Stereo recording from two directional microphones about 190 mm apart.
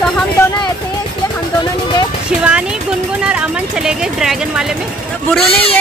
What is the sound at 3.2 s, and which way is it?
Speech, 5° right (ahead or behind).